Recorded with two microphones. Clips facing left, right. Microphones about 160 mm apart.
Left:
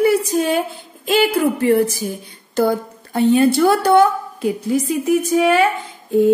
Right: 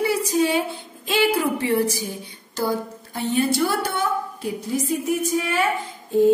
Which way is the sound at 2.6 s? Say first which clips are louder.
Left 1 dB; 70° left (ahead or behind).